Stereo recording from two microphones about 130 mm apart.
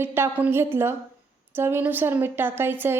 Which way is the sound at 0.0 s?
20° right (ahead or behind).